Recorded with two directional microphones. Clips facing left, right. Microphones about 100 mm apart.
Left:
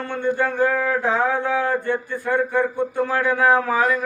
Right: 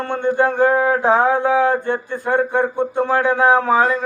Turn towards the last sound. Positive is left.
turn(degrees=-25)  # may be behind; listen again after turning